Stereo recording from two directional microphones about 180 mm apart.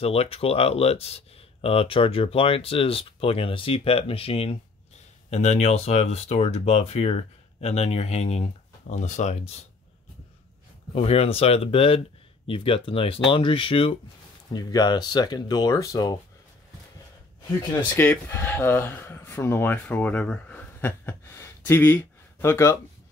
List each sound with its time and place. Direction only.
0.0 s speech: 35° left (ahead or behind)
11.0 s speech: 35° left (ahead or behind)
17.9 s speech: 10° left (ahead or behind)